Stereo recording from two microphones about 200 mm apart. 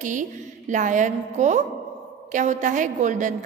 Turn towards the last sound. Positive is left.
turn(degrees=-40)  # may be behind; listen again after turning